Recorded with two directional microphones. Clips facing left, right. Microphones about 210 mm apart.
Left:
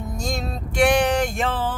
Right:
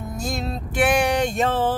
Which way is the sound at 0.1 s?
5° right (ahead or behind).